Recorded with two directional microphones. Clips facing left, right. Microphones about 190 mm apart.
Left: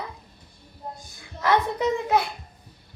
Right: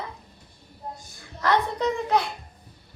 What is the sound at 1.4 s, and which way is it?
Speech, 10° left (ahead or behind).